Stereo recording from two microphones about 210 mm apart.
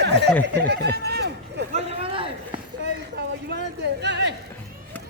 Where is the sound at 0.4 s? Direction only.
55° right (ahead or behind).